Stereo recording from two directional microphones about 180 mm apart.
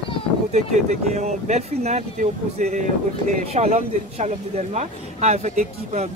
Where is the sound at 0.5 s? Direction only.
40° right (ahead or behind).